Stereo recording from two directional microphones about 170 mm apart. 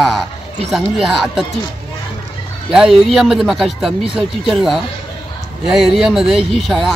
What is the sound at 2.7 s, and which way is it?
Speech, centre (ahead or behind).